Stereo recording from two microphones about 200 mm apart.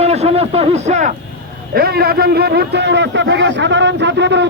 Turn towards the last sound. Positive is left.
turn(degrees=-60)  # may be behind; listen again after turning